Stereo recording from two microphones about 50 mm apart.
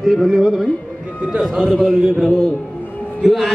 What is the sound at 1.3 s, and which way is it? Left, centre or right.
Speech, centre.